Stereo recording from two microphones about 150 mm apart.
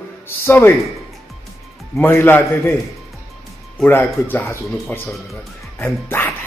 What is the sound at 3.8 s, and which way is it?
Speech, 15° left (ahead or behind).